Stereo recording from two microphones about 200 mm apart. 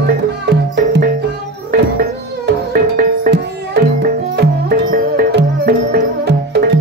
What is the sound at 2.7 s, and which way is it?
Music, 45° right (ahead or behind).